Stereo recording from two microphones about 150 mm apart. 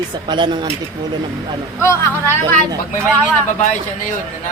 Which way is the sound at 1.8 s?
15° left (ahead or behind).